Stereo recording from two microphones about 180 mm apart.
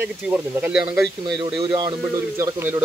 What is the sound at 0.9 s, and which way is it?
A man's voice, 25° right (ahead or behind).